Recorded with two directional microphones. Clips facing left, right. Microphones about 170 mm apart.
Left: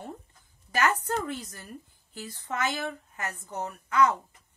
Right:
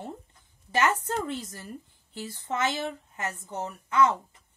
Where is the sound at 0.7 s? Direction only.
25° right (ahead or behind).